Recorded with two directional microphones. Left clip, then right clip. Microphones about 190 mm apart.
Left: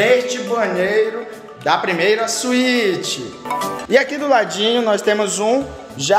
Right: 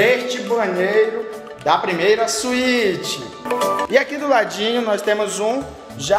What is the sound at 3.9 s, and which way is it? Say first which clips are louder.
Speech: left 5 dB; 20° left (ahead or behind).